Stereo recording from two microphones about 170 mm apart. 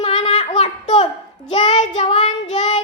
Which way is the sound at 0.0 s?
40° left (ahead or behind).